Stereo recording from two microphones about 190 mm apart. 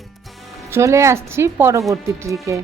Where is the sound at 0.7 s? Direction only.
15° right (ahead or behind).